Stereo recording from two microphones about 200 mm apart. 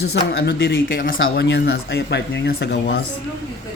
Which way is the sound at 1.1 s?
65° left (ahead or behind).